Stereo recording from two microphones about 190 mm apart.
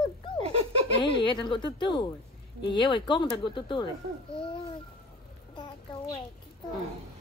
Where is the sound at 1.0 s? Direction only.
25° left (ahead or behind).